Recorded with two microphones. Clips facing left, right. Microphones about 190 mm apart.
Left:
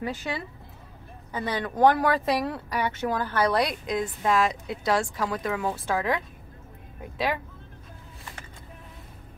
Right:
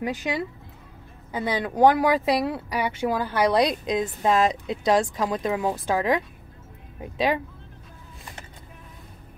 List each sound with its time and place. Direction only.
0.0 s speech: 15° right (ahead or behind)